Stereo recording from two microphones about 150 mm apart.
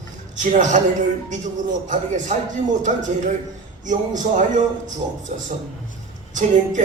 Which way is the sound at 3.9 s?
55° right (ahead or behind).